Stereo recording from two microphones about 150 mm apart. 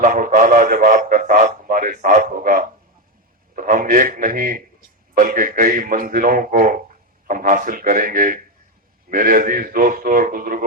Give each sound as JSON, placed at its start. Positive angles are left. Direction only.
{"t": 0.0, "sound": "a man's voice", "side_deg": -60}